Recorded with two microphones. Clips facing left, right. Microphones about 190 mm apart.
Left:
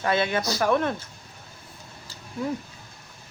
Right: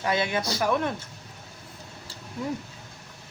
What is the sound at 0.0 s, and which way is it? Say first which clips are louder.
Speech: left 2 dB; 15° right (ahead or behind).